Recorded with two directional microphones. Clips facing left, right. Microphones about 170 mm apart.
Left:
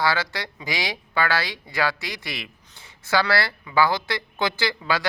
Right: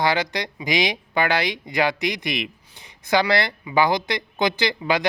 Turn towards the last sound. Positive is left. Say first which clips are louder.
# right 3 dB
turn(degrees=-20)  # may be behind; listen again after turning